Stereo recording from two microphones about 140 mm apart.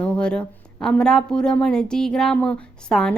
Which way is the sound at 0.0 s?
5° left (ahead or behind).